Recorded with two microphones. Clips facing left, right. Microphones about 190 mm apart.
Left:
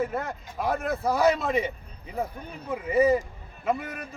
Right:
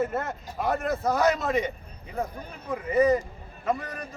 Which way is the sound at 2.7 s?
5° left (ahead or behind).